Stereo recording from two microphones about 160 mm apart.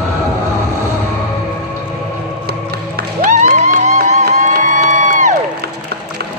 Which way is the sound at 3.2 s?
50° right (ahead or behind).